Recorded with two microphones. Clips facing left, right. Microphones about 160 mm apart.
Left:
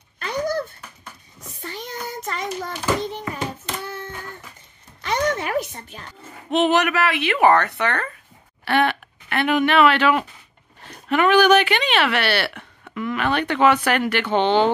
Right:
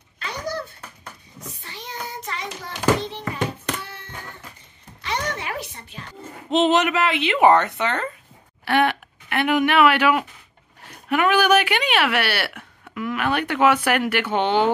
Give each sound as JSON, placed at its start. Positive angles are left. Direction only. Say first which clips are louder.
{"t": 0.2, "sound": "a sound", "louder": "left 5 dB", "side_deg": 50}
{"t": 5.0, "sound": "music", "louder": "left 5 dB", "side_deg": 45}
{"t": 6.5, "sound": "speech", "louder": "even", "side_deg": -20}